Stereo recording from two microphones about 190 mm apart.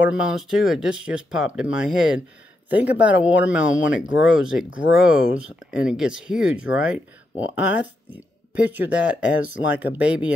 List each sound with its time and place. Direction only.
0.2 s speech: 5° right (ahead or behind)
3.6 s speech: 90° left
4.3 s speech: 5° right (ahead or behind)